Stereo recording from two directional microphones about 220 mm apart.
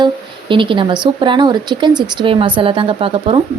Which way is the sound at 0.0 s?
20° right (ahead or behind).